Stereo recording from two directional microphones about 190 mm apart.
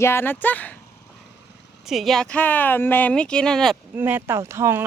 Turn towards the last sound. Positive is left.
turn(degrees=-15)  # may be behind; listen again after turning